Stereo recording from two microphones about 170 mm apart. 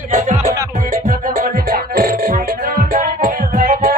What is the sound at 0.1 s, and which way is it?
Music, 45° right (ahead or behind).